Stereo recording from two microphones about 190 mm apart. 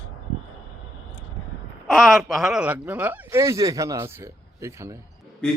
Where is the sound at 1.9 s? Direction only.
Centre (ahead or behind).